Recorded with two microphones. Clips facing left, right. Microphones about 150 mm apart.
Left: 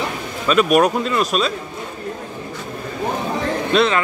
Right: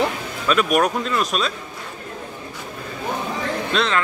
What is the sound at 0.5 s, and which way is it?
Speech, centre (ahead or behind).